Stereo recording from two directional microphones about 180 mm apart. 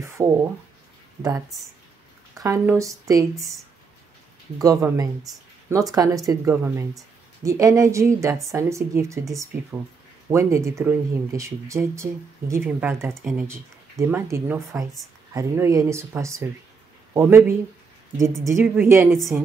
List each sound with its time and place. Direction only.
0.2 s speech: 20° right (ahead or behind)
2.3 s speech: 15° right (ahead or behind)
4.6 s speech: 20° right (ahead or behind); by 19.3 s centre (ahead or behind)